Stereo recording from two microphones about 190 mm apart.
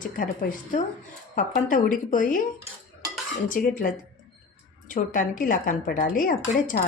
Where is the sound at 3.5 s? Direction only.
45° left (ahead or behind).